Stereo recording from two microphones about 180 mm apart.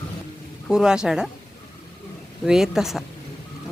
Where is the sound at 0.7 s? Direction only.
5° right (ahead or behind).